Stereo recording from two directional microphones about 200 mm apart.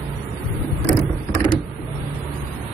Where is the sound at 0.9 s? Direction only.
25° left (ahead or behind).